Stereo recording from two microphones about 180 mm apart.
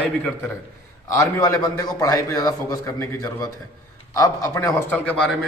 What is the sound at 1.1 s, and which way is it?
A man's voice, 20° left (ahead or behind).